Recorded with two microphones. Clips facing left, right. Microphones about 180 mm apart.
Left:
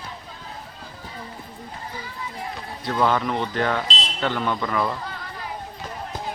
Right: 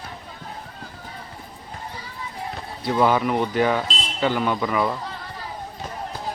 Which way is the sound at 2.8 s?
10° right (ahead or behind).